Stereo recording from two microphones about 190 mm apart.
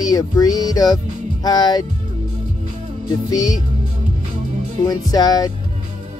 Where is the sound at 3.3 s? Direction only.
20° left (ahead or behind).